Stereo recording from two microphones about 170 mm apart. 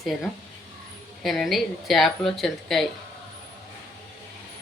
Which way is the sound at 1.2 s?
Centre (ahead or behind).